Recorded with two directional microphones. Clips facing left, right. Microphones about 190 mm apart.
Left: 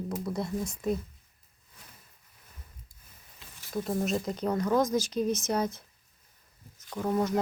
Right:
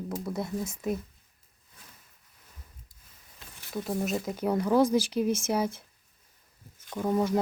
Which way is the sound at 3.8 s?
5° right (ahead or behind).